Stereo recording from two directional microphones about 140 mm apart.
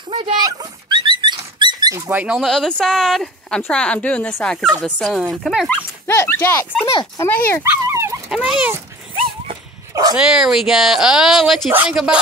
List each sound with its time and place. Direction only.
0.1 s speech: 40° right (ahead or behind)
0.5 s dog: 30° right (ahead or behind)
2.0 s speech: 10° right (ahead or behind)
2.3 s speech: centre (ahead or behind)
5.7 s speech: 15° left (ahead or behind)
7.6 s dog: 20° right (ahead or behind)
8.3 s speech: 5° right (ahead or behind)
10.1 s speech: 5° right (ahead or behind)